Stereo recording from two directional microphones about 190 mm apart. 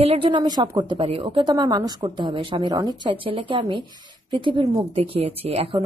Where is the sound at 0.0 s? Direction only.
30° right (ahead or behind).